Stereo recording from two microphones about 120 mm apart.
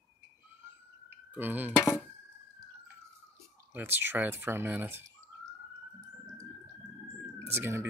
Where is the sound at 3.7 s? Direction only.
15° right (ahead or behind).